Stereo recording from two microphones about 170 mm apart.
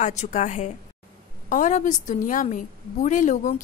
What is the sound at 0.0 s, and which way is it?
A woman's voice, 45° left (ahead or behind).